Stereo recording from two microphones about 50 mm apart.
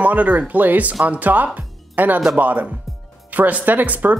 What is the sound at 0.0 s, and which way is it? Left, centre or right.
Speech, right.